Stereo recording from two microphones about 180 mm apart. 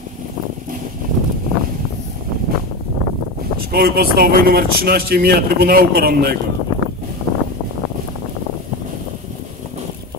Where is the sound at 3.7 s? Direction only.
60° right (ahead or behind).